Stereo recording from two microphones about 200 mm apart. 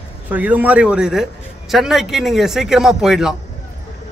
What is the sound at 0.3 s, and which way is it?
A man's voice, 10° right (ahead or behind).